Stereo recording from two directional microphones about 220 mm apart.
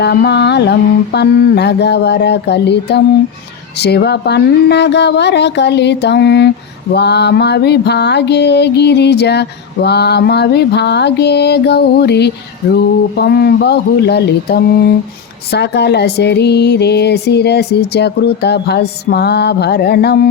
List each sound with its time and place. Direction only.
0.0 s mantra: 50° left (ahead or behind)